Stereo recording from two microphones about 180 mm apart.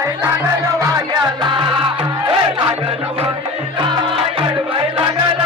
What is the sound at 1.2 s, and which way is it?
Music, 25° right (ahead or behind).